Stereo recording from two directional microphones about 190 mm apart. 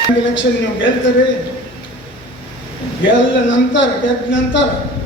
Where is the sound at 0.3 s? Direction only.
75° left (ahead or behind).